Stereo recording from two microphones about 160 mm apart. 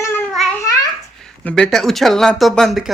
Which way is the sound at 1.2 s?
5° left (ahead or behind).